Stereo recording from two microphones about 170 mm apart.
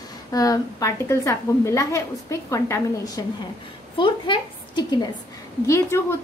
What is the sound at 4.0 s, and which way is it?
Speech, 30° left (ahead or behind).